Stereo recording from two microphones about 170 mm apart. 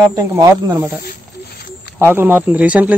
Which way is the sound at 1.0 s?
65° left (ahead or behind).